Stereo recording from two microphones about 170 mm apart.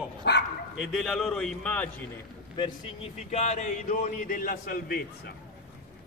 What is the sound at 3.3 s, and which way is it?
A man's voice, 40° left (ahead or behind).